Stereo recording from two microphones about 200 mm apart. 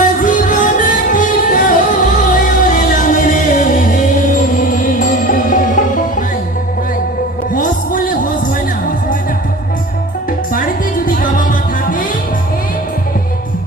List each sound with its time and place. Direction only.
0.0 s music: 40° left (ahead or behind)
7.5 s music: 40° left (ahead or behind)
11.0 s music: 40° left (ahead or behind)